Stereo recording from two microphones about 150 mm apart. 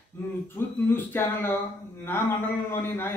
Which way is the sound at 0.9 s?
15° left (ahead or behind).